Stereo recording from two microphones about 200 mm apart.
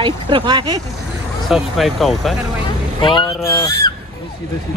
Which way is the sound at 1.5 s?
Centre (ahead or behind).